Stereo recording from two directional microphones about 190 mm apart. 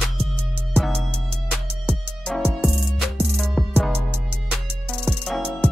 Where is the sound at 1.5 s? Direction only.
5° left (ahead or behind).